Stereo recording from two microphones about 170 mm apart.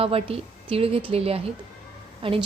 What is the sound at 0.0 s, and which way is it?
Speech, 35° right (ahead or behind).